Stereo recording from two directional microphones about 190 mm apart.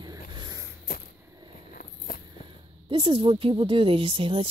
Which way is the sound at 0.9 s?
50° left (ahead or behind).